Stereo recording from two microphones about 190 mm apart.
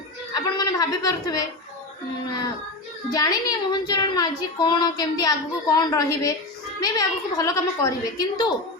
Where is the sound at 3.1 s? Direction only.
20° left (ahead or behind).